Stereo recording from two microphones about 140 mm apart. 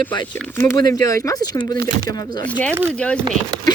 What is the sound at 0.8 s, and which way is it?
Speech, 25° left (ahead or behind).